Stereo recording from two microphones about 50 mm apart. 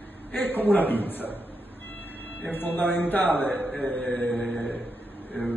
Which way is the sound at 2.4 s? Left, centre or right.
Left.